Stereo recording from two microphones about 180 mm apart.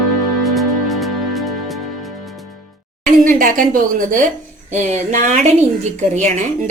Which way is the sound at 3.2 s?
50° right (ahead or behind).